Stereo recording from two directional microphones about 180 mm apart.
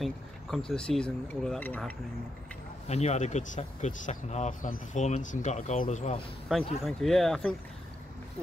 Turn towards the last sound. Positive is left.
turn(degrees=5)  # may be behind; listen again after turning